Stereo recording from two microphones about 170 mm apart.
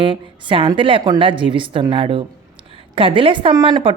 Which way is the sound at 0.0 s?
30° right (ahead or behind).